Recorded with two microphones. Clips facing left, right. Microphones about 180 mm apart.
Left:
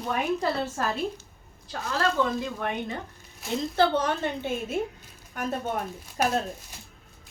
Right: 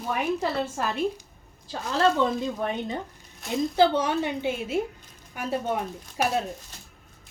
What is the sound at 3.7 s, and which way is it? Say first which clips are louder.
A woman's voice: right 2 dB; 10° right (ahead or behind).